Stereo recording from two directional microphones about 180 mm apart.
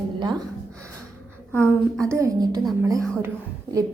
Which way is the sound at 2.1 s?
15° right (ahead or behind).